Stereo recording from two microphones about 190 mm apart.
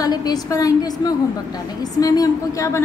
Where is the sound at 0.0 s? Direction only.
20° left (ahead or behind).